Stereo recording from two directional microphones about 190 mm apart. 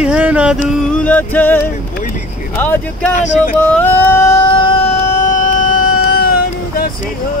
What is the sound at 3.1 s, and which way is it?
Speech, 45° left (ahead or behind).